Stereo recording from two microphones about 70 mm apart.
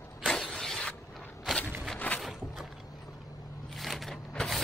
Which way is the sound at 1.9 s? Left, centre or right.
Left.